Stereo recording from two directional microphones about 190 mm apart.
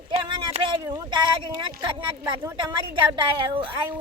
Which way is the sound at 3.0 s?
25° right (ahead or behind).